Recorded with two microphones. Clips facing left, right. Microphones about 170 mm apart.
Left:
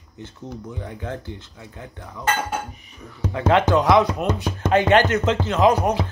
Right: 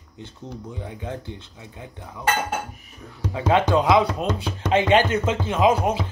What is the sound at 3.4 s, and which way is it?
Speech, 10° right (ahead or behind).